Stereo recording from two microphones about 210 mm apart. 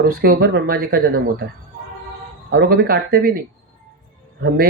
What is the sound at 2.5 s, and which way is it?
Speech, 45° right (ahead or behind).